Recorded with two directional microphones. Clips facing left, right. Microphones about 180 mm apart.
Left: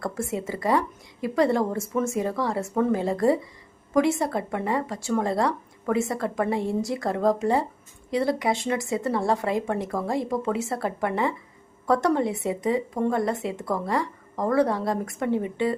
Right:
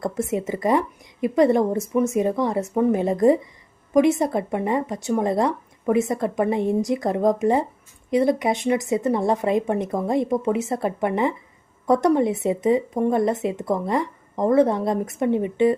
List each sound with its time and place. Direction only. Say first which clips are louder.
0.0 s speech: right 5 dB; 20° right (ahead or behind)